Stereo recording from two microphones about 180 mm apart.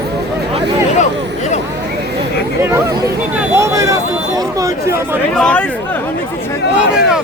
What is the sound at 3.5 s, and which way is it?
Speech, 15° right (ahead or behind).